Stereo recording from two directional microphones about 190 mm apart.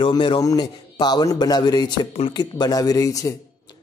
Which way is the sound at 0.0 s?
25° left (ahead or behind).